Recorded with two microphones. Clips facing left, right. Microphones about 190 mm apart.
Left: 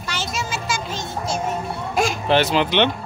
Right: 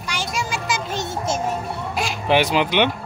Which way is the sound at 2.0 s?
45° left (ahead or behind).